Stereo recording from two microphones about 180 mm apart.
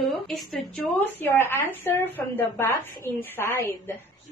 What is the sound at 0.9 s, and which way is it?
Speech, 10° left (ahead or behind).